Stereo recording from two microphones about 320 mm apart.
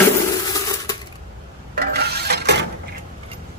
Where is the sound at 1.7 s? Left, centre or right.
Right.